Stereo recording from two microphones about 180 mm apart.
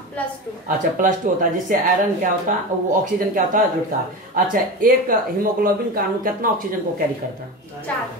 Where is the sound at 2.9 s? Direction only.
50° right (ahead or behind).